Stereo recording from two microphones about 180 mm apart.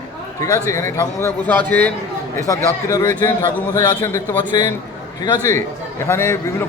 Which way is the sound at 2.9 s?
15° left (ahead or behind).